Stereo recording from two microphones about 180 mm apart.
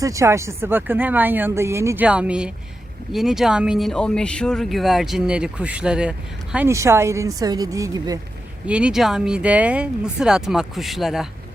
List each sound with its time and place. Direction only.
0.0 s speech: 15° right (ahead or behind)
6.7 s a woman's voice: 15° right (ahead or behind)
8.6 s speech: 5° right (ahead or behind)